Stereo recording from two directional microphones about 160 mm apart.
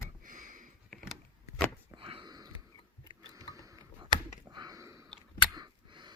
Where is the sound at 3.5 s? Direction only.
20° right (ahead or behind).